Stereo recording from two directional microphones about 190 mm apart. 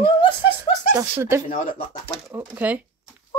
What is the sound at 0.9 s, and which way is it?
Speech, 15° right (ahead or behind).